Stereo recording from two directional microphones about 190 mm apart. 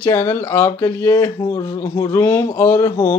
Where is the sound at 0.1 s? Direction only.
15° left (ahead or behind).